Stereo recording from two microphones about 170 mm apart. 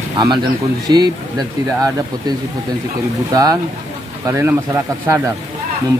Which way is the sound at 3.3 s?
20° right (ahead or behind).